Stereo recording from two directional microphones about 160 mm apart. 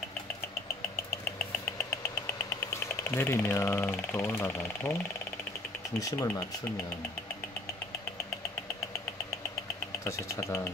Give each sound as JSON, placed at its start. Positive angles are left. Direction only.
{"t": 2.7, "sound": "speech", "side_deg": 15}
{"t": 5.9, "sound": "speech", "side_deg": 20}
{"t": 10.0, "sound": "speech", "side_deg": 20}